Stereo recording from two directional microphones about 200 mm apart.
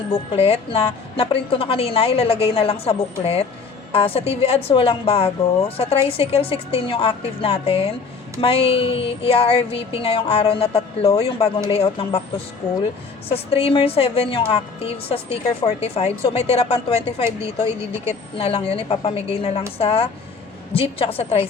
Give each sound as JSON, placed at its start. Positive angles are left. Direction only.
{"t": 0.1, "sound": "a woman's voice", "side_deg": 30}
{"t": 13.2, "sound": "a woman's voice", "side_deg": 30}